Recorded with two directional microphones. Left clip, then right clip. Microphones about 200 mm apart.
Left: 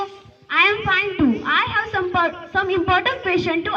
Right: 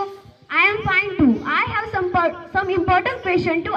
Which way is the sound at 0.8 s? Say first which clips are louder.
Even; 35° right (ahead or behind).